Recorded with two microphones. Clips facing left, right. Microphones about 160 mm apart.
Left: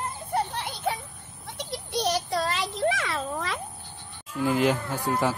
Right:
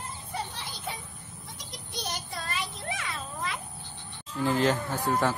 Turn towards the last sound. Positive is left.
turn(degrees=10)  # may be behind; listen again after turning